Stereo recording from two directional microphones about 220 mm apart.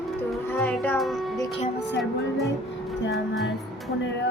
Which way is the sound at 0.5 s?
10° left (ahead or behind).